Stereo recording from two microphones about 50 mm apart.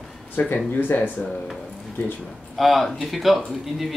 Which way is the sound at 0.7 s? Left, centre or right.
Left.